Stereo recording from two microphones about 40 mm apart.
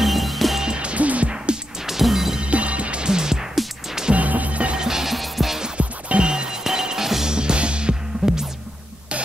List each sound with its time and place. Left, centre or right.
0.0 s music: centre
0.6 s music: right
1.9 s music: centre
2.4 s music: right
3.1 s music: centre
4.1 s music: right
4.7 s music: centre
5.8 s music: right; by 7.3 s centre
7.3 s music: right
8.2 s music: centre